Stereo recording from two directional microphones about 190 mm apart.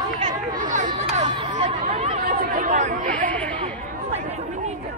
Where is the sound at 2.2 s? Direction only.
45° right (ahead or behind).